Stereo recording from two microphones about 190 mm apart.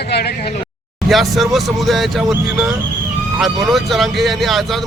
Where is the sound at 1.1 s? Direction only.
Centre (ahead or behind).